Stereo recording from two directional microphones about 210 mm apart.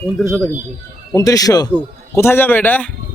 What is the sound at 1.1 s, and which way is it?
A man's voice, 15° left (ahead or behind).